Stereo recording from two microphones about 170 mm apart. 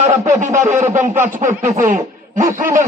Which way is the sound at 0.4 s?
45° right (ahead or behind).